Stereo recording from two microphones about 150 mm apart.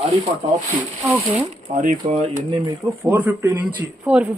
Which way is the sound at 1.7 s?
50° right (ahead or behind).